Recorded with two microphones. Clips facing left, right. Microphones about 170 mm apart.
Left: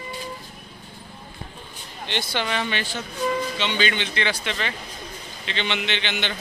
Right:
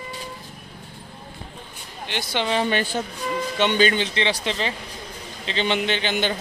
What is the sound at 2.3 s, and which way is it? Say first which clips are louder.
Speech: right 4 dB; 25° right (ahead or behind).